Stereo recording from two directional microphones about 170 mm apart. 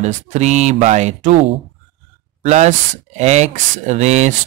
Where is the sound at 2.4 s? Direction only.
45° right (ahead or behind).